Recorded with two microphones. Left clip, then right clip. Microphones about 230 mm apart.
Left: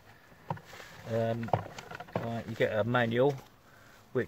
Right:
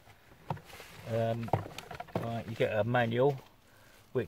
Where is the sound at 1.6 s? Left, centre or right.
Right.